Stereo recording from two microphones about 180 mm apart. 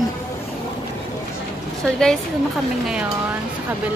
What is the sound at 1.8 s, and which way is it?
Speech, 5° left (ahead or behind).